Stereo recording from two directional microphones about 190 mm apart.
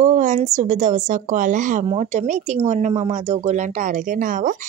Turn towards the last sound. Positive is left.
turn(degrees=-45)  # may be behind; listen again after turning